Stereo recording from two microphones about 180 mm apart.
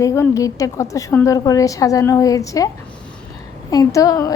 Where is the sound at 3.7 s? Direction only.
20° left (ahead or behind).